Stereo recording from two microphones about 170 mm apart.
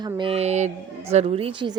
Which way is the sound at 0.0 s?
30° right (ahead or behind).